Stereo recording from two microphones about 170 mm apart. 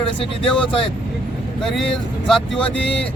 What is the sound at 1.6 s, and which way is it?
Speech, centre (ahead or behind).